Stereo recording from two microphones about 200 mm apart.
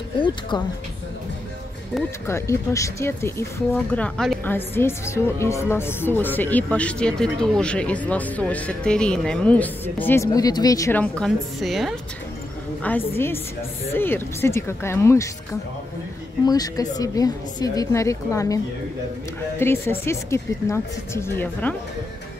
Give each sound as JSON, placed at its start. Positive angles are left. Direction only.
{"t": 2.2, "sound": "speech", "side_deg": 15}
{"t": 16.4, "sound": "speech", "side_deg": 20}
{"t": 19.6, "sound": "speech", "side_deg": 10}